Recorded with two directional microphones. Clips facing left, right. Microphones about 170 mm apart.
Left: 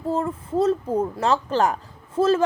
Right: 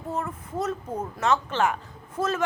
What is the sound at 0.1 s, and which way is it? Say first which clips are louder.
A woman's voice: left 7 dB; 30° left (ahead or behind).